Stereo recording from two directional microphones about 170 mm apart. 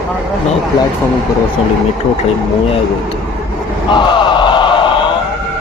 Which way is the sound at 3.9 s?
25° left (ahead or behind).